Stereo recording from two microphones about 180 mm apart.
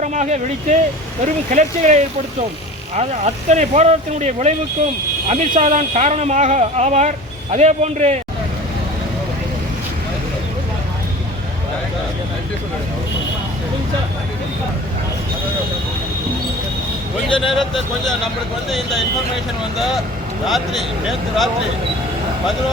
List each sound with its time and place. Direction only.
0.0 s speech: 40° right (ahead or behind)
17.2 s a sound: 30° left (ahead or behind)
17.5 s speech: centre (ahead or behind)
20.5 s speech: centre (ahead or behind)